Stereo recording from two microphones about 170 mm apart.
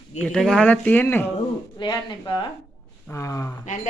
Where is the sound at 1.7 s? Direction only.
25° left (ahead or behind).